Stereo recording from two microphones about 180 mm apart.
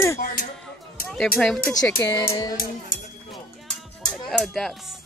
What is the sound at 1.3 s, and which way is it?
Speech, 5° left (ahead or behind).